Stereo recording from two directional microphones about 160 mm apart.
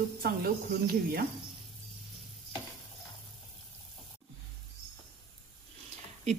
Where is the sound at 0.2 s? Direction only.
70° right (ahead or behind).